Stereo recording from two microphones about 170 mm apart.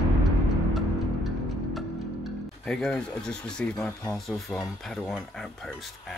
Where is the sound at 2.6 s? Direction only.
5° left (ahead or behind).